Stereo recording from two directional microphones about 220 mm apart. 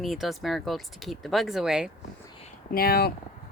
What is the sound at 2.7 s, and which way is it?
Speech, 45° left (ahead or behind).